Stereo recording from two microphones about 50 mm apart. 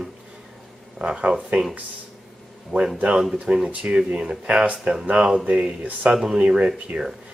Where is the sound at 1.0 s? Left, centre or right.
Right.